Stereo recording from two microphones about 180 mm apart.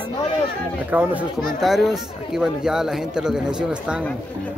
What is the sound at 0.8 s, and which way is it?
A man's voice, 10° right (ahead or behind).